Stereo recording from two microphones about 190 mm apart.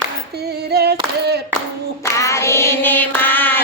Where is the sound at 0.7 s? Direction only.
55° right (ahead or behind).